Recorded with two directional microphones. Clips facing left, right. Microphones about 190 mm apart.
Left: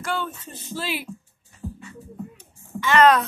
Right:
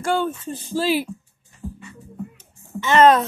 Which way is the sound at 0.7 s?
35° right (ahead or behind).